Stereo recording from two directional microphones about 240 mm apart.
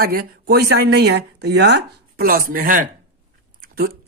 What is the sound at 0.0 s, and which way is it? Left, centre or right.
Speech, right.